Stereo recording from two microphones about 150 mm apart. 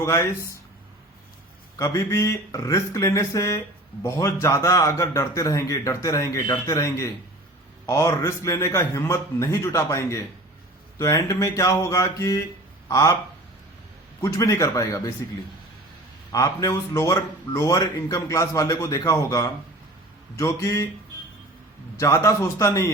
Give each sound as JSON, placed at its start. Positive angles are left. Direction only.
{"t": 0.0, "sound": "speech", "side_deg": 20}
{"t": 1.7, "sound": "speech", "side_deg": 25}
{"t": 14.2, "sound": "speech", "side_deg": 20}
{"t": 16.3, "sound": "speech", "side_deg": 20}
{"t": 21.9, "sound": "speech", "side_deg": 20}